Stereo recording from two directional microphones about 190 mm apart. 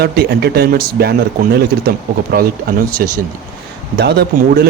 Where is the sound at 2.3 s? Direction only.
50° right (ahead or behind).